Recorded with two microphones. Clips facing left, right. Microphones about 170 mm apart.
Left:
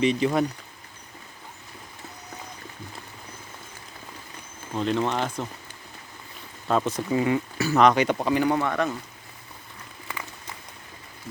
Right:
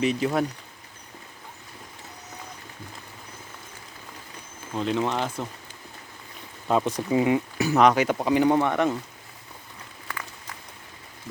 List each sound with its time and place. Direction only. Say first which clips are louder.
0.0 s speech: left 2 dB; 5° right (ahead or behind)
4.8 s speech: left 1 dB; 5° right (ahead or behind)
6.7 s speech: right 1 dB; 15° right (ahead or behind)